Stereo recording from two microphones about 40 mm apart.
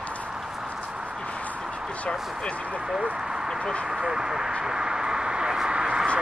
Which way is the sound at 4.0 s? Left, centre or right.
Centre.